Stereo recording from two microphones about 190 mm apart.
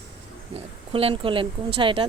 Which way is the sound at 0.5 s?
30° right (ahead or behind).